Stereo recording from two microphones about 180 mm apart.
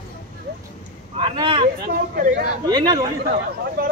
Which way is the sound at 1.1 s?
30° right (ahead or behind).